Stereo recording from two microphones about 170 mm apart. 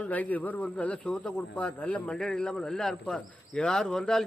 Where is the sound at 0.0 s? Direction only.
10° left (ahead or behind).